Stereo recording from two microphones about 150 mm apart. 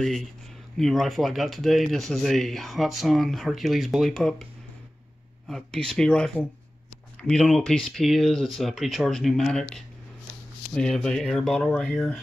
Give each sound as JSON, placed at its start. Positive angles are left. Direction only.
{"t": 0.0, "sound": "speech", "side_deg": 0}
{"t": 5.5, "sound": "speech", "side_deg": 5}